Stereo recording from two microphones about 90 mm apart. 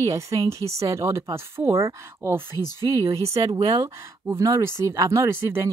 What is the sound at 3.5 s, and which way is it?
Speech, 45° right (ahead or behind).